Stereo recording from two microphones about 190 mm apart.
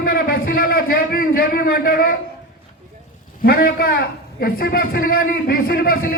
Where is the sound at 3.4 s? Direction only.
55° left (ahead or behind).